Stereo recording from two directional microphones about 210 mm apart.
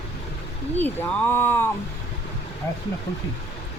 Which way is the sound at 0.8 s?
5° left (ahead or behind).